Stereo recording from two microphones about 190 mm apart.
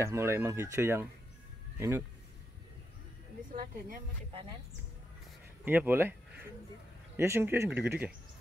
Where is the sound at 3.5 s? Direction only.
50° right (ahead or behind).